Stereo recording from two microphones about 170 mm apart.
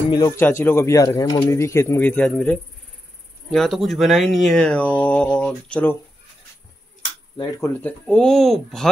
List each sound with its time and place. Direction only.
0.1 s speech: 20° left (ahead or behind)
7.8 s speech: 5° left (ahead or behind)